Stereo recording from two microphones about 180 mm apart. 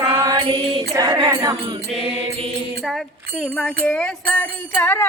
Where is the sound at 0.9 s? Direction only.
20° right (ahead or behind).